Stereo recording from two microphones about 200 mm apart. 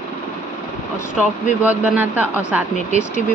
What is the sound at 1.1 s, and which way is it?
Speech, 5° right (ahead or behind).